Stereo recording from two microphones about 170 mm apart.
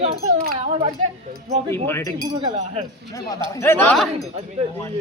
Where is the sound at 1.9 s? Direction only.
15° left (ahead or behind).